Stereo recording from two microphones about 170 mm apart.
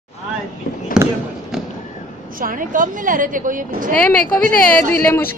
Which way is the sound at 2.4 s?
55° right (ahead or behind).